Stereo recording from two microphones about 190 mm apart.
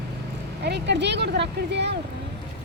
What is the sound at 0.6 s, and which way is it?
Speech, 65° right (ahead or behind).